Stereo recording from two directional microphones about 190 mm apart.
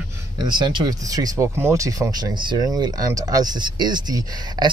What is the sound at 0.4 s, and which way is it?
Speech, 25° right (ahead or behind).